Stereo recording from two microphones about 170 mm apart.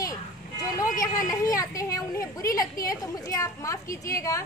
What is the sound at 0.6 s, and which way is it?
A woman's voice, 20° left (ahead or behind).